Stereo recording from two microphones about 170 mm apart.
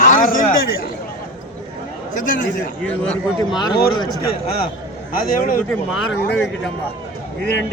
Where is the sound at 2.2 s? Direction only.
55° left (ahead or behind).